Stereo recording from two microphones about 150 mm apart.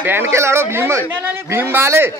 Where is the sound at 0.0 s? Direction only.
15° right (ahead or behind).